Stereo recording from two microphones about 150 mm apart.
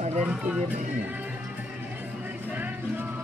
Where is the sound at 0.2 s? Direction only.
5° right (ahead or behind).